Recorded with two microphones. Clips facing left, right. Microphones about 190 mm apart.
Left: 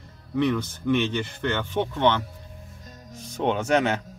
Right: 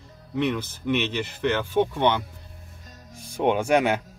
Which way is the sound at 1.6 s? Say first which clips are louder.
Even; 10° right (ahead or behind).